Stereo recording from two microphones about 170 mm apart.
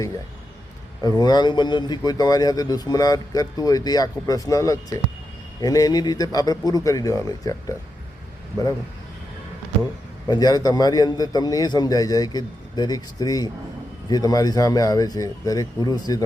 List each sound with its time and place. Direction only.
1.0 s speech: 25° left (ahead or behind)
10.2 s speech: 25° left (ahead or behind)